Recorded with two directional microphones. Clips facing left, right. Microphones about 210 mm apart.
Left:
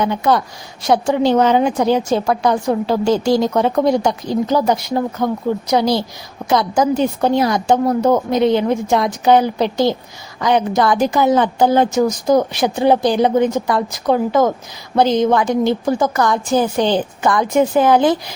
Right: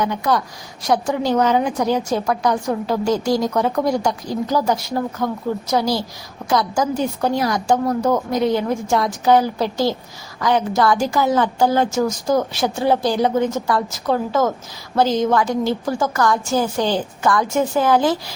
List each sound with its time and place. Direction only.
0.0 s a woman's voice: 25° left (ahead or behind)